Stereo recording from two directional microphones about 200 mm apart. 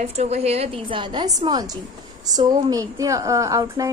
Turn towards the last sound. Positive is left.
turn(degrees=-15)  # may be behind; listen again after turning